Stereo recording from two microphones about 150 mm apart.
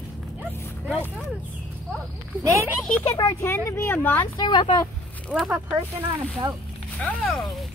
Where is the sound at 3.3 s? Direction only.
15° left (ahead or behind).